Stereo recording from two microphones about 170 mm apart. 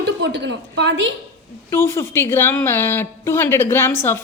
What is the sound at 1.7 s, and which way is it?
A woman's voice, 15° left (ahead or behind).